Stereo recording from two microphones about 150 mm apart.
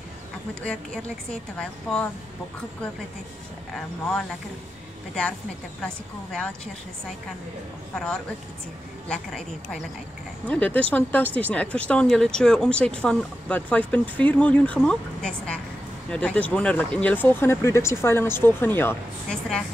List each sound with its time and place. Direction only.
0.7 s a woman's voice: 5° left (ahead or behind)
7.9 s a woman's voice: 5° left (ahead or behind)